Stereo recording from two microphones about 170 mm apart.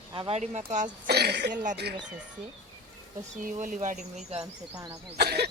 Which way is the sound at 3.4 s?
50° right (ahead or behind).